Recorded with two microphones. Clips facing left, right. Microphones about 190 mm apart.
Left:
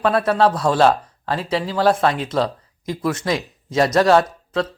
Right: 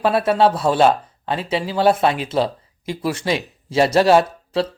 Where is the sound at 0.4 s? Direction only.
5° right (ahead or behind).